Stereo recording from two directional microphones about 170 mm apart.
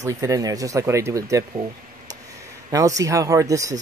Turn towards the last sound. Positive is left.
turn(degrees=-20)  # may be behind; listen again after turning